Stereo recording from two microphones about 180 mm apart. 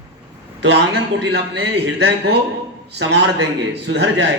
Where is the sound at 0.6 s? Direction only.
70° right (ahead or behind).